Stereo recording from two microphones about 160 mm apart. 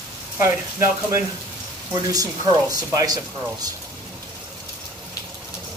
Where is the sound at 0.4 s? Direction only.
15° right (ahead or behind).